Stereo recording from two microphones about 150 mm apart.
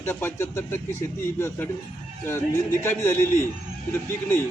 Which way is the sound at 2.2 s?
15° left (ahead or behind).